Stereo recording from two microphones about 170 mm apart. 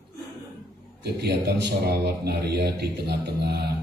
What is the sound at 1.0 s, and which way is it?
A man's voice, 70° right (ahead or behind).